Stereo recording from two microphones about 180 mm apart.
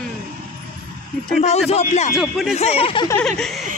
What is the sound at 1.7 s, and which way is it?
Speech, 40° left (ahead or behind).